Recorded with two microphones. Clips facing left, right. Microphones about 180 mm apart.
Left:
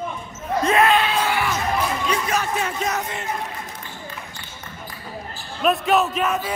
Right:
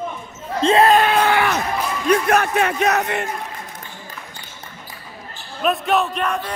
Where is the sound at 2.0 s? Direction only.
60° right (ahead or behind).